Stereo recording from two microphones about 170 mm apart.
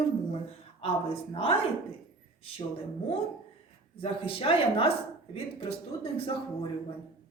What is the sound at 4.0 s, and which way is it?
Speech, 35° left (ahead or behind).